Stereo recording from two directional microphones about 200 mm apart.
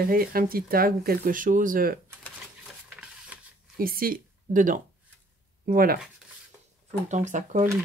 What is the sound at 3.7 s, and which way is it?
Speech, 45° right (ahead or behind).